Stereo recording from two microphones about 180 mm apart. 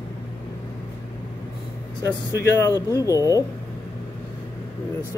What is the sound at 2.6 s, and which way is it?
Speech, 15° left (ahead or behind).